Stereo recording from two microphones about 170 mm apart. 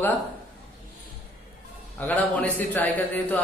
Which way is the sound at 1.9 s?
10° left (ahead or behind).